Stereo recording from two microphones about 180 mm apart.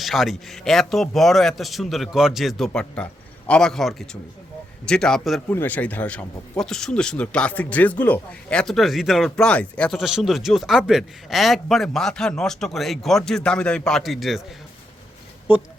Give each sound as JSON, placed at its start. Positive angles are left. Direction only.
{"t": 0.0, "sound": "speech", "side_deg": 0}